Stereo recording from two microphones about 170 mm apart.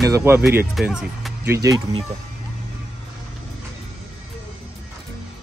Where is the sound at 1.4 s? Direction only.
15° right (ahead or behind).